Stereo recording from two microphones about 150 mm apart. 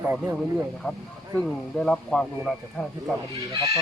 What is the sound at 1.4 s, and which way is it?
Speech, 5° left (ahead or behind).